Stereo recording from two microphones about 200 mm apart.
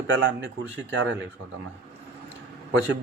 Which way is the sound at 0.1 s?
65° right (ahead or behind).